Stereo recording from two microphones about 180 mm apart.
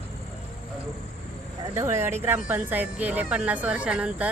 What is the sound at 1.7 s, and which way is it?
A woman's voice, 15° right (ahead or behind).